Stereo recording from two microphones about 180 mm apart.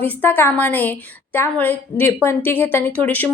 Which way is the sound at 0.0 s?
10° left (ahead or behind).